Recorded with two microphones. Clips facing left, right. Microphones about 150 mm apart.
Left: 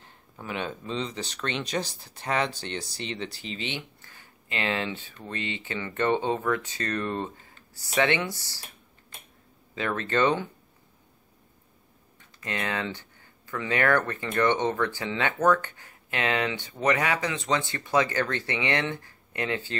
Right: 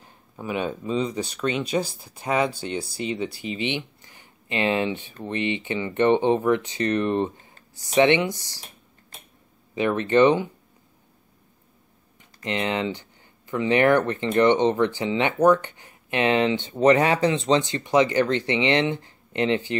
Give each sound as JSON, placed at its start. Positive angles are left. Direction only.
{"t": 0.0, "sound": "speech", "side_deg": -15}
{"t": 9.8, "sound": "speech", "side_deg": -15}
{"t": 12.4, "sound": "speech", "side_deg": -20}